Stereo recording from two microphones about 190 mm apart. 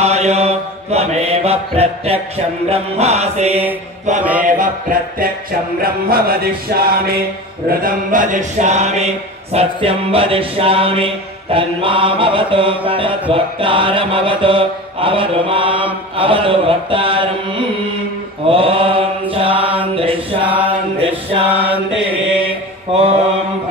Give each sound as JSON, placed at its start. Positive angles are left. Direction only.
{"t": 0.0, "sound": "mantra", "side_deg": -35}
{"t": 4.2, "sound": "mantra", "side_deg": -10}
{"t": 4.5, "sound": "music", "side_deg": -45}
{"t": 7.8, "sound": "mantra", "side_deg": -45}
{"t": 19.5, "sound": "mantra", "side_deg": -10}
{"t": 20.0, "sound": "mantra", "side_deg": -30}
{"t": 20.4, "sound": "mantra", "side_deg": -10}
{"t": 21.0, "sound": "mantra", "side_deg": -30}
{"t": 21.5, "sound": "mantra", "side_deg": -10}